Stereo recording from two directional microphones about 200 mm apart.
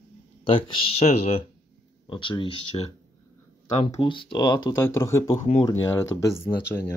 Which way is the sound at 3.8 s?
25° left (ahead or behind).